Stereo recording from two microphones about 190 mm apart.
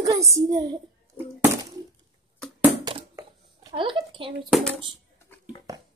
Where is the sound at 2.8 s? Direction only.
20° right (ahead or behind).